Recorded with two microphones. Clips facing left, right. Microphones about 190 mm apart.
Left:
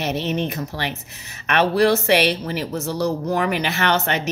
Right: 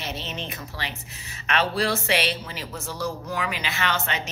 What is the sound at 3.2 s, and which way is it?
Speech, 55° left (ahead or behind).